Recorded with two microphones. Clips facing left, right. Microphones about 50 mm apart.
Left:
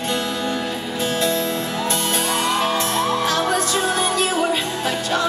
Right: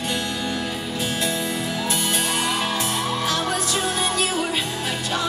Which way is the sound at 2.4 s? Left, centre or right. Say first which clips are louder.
Left 4 dB; centre.